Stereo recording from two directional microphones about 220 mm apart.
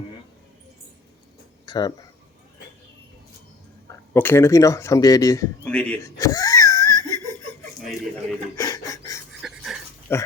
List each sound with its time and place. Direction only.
1.6 s speech: 20° left (ahead or behind)
3.8 s speech: 10° left (ahead or behind)
5.6 s giggle: 5° left (ahead or behind)
8.5 s a sound: 15° left (ahead or behind)
9.4 s dog: centre (ahead or behind)
10.1 s speech: 10° left (ahead or behind)